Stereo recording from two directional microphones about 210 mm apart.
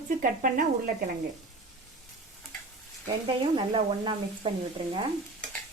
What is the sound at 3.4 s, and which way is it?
Speech, 25° right (ahead or behind).